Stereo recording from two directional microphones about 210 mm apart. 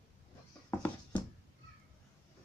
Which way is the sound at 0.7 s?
10° left (ahead or behind).